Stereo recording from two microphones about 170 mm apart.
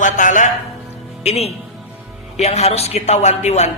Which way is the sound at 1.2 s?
35° left (ahead or behind).